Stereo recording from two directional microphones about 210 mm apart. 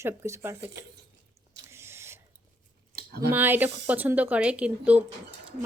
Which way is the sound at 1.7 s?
10° right (ahead or behind).